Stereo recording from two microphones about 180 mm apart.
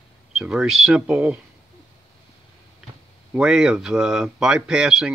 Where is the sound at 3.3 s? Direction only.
5° right (ahead or behind).